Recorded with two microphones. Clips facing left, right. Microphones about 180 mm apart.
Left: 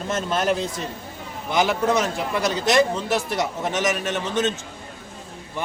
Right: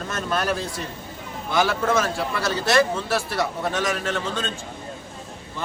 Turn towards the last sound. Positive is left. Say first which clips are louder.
# left 3 dB
turn(degrees=20)  # may be behind; listen again after turning